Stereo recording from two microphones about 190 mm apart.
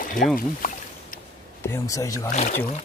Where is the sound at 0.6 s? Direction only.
50° left (ahead or behind).